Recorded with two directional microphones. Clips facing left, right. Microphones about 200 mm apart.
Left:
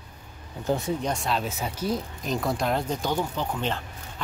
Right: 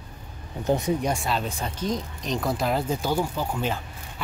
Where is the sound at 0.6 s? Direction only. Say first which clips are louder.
Right 3 dB; 20° right (ahead or behind).